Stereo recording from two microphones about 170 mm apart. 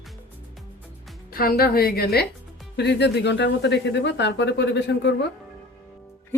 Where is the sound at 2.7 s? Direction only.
85° left.